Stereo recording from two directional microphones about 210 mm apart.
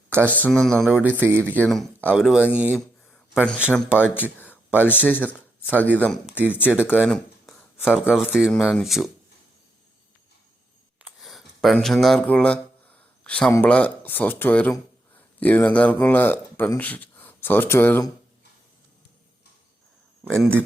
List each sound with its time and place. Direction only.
0.1 s speech: 10° right (ahead or behind)
0.3 s speech: 5° left (ahead or behind)
1.5 s speech: 5° left (ahead or behind)
3.8 s speech: 5° right (ahead or behind)
4.1 s speech: 10° left (ahead or behind)
11.0 s speech: centre (ahead or behind)
20.2 s speech: centre (ahead or behind)